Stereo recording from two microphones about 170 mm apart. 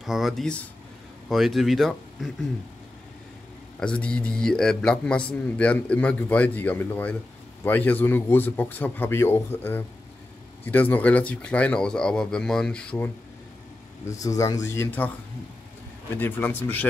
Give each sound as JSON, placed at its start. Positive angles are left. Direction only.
{"t": 0.0, "sound": "speech", "side_deg": 0}
{"t": 3.8, "sound": "a man's voice", "side_deg": 5}
{"t": 14.0, "sound": "a man's voice", "side_deg": 20}
{"t": 16.2, "sound": "a man's voice", "side_deg": 10}